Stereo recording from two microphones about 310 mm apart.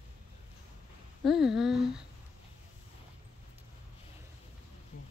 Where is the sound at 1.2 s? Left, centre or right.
Centre.